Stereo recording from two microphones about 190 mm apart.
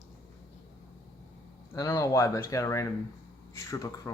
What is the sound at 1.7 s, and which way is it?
Speech, 20° left (ahead or behind).